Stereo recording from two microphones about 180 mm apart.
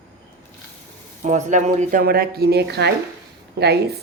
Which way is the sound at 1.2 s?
40° right (ahead or behind).